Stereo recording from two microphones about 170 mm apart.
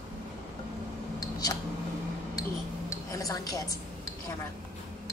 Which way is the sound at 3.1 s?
20° left (ahead or behind).